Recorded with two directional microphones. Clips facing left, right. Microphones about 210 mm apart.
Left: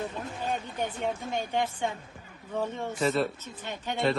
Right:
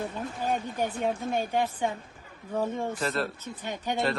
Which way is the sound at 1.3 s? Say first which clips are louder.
Right 2 dB; 10° right (ahead or behind).